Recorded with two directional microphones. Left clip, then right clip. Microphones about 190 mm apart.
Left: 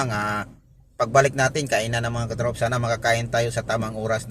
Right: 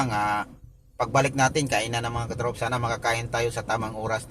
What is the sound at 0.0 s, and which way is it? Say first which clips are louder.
Speech: even; 20° left (ahead or behind).